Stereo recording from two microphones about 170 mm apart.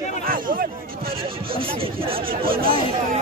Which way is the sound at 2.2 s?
60° right (ahead or behind).